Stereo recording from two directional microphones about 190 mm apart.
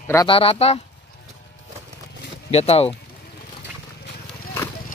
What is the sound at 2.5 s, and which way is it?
Speech, 35° left (ahead or behind).